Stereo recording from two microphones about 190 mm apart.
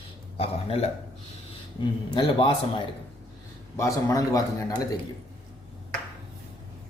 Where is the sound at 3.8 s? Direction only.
20° left (ahead or behind).